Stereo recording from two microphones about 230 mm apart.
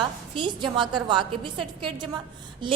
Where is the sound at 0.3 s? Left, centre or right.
Right.